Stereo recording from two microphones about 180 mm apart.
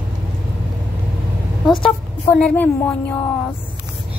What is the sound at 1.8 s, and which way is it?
Speech, 5° left (ahead or behind).